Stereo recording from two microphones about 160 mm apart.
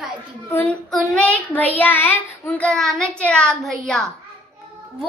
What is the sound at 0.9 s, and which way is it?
A child's voice, 10° left (ahead or behind).